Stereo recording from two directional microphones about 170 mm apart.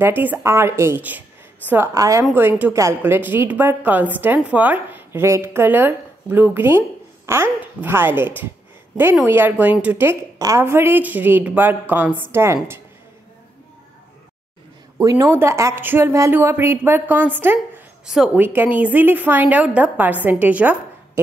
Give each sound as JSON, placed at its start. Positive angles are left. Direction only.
{"t": 0.0, "sound": "a woman's voice", "side_deg": -10}
{"t": 9.3, "sound": "a woman's voice", "side_deg": -10}
{"t": 15.0, "sound": "a woman's voice", "side_deg": -20}